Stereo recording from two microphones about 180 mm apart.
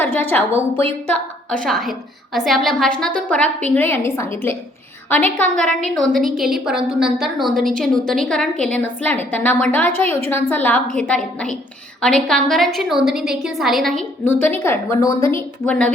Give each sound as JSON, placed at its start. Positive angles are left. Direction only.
{"t": 0.0, "sound": "a woman's voice", "side_deg": 10}